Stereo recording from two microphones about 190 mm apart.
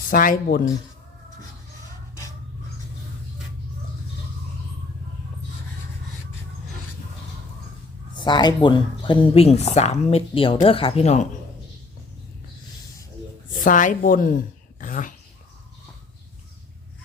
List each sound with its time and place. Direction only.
0.1 s speech: 45° left (ahead or behind)
8.1 s speech: 25° left (ahead or behind)
13.7 s a woman's voice: 45° left (ahead or behind)